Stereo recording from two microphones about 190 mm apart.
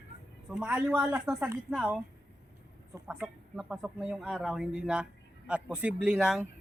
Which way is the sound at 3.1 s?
Centre (ahead or behind).